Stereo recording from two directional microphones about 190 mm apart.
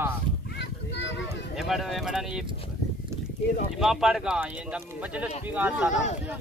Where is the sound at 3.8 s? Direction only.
Centre (ahead or behind).